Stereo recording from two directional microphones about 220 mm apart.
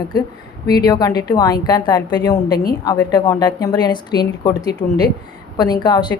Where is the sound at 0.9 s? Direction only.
15° left (ahead or behind).